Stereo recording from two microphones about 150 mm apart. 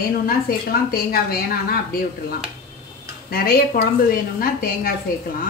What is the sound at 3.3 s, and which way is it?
A woman's voice, 80° left.